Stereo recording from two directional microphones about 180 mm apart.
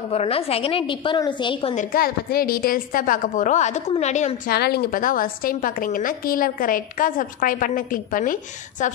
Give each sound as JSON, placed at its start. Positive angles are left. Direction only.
{"t": 0.1, "sound": "a woman's voice", "side_deg": 35}
{"t": 1.8, "sound": "a woman's voice", "side_deg": 55}
{"t": 4.5, "sound": "a woman's voice", "side_deg": 60}